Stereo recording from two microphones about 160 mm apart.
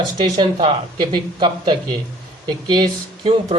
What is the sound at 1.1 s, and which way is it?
Speech, 30° right (ahead or behind).